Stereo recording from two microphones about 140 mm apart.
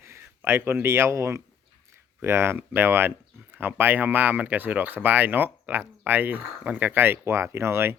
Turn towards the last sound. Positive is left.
turn(degrees=-20)  # may be behind; listen again after turning